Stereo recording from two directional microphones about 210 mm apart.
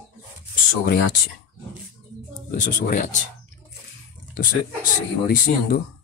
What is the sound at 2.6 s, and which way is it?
Speech, 35° left (ahead or behind).